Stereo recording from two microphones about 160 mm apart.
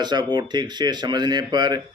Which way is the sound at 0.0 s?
25° right (ahead or behind).